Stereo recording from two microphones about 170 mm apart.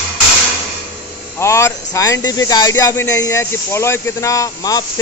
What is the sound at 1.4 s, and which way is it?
Speech, 15° left (ahead or behind).